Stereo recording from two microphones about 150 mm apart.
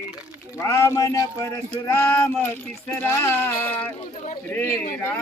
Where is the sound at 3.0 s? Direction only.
15° left (ahead or behind).